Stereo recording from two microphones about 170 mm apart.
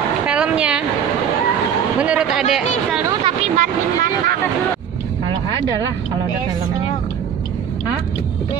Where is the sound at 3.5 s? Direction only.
50° right (ahead or behind).